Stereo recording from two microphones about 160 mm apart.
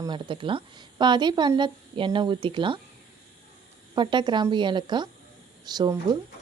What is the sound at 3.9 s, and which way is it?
Speech, 30° right (ahead or behind).